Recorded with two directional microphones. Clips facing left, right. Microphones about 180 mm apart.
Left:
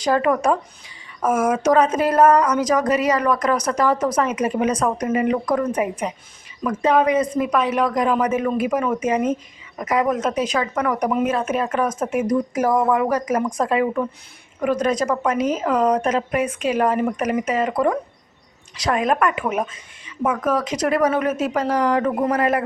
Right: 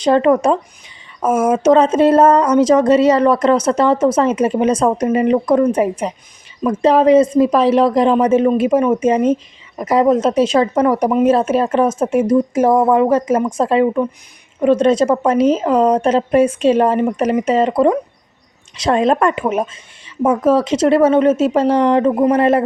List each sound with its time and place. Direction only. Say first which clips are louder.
0.0 s speech: right 6 dB; 25° right (ahead or behind)